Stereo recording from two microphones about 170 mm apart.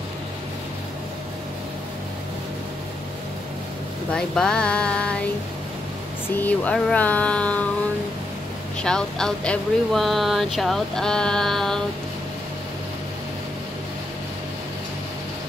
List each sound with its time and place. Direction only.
4.1 s speech: 5° left (ahead or behind)
6.3 s speech: 10° left (ahead or behind)
8.8 s speech: 5° left (ahead or behind)